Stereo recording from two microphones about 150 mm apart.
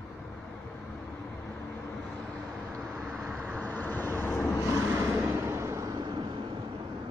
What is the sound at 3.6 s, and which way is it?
Vehicle, 10° left (ahead or behind).